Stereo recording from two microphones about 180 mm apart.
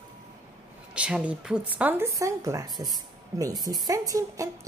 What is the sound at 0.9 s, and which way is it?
A woman's voice, 5° right (ahead or behind).